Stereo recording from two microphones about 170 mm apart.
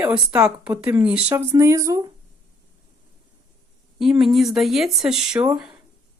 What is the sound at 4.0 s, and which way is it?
Speech, centre (ahead or behind).